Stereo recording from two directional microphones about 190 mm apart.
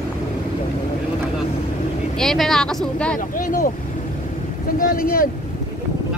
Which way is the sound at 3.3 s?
45° left (ahead or behind).